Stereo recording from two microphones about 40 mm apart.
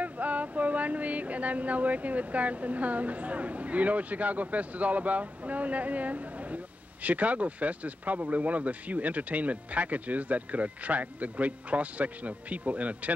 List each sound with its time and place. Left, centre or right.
0.0 s speech: right